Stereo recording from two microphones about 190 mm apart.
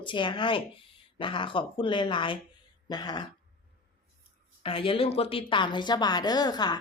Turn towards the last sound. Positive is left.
turn(degrees=20)  # may be behind; listen again after turning